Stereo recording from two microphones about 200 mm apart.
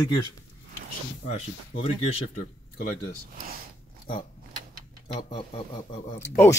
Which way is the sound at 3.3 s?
45° right (ahead or behind).